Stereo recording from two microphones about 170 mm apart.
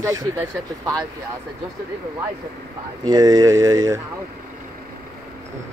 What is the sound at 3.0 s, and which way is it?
Speech, 25° right (ahead or behind).